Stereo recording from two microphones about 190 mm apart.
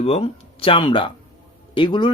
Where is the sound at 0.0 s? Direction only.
30° left (ahead or behind).